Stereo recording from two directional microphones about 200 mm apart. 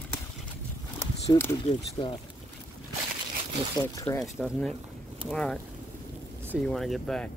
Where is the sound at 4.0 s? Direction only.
15° left (ahead or behind).